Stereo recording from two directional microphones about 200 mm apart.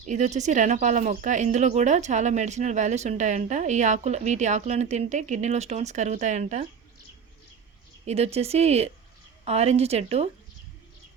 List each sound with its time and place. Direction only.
0.0 s speech: 35° right (ahead or behind)
8.0 s speech: 30° right (ahead or behind)